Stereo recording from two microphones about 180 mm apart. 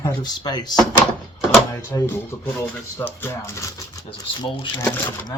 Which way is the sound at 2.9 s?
10° left (ahead or behind).